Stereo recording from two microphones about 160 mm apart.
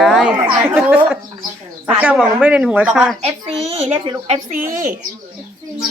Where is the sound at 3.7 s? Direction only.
40° right (ahead or behind).